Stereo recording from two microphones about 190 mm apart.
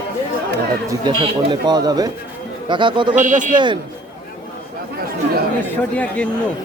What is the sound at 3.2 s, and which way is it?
Speech, 40° right (ahead or behind).